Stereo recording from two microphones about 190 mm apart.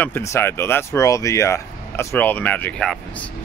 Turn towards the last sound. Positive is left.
turn(degrees=5)  # may be behind; listen again after turning